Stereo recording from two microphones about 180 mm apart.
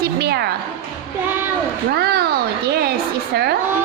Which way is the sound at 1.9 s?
60° right (ahead or behind).